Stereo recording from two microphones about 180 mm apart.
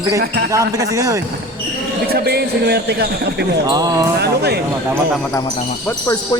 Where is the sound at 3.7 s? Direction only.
20° right (ahead or behind).